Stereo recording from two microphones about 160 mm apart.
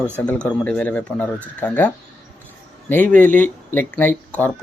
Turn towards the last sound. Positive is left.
turn(degrees=10)  # may be behind; listen again after turning